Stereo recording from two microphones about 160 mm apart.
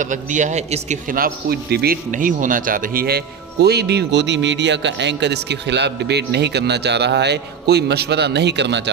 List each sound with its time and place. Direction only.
0.0 s a man's voice: 50° right (ahead or behind); by 8.8 s 90° right